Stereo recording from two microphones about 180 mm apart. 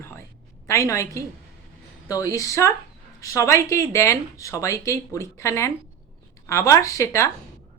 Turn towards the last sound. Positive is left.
turn(degrees=15)  # may be behind; listen again after turning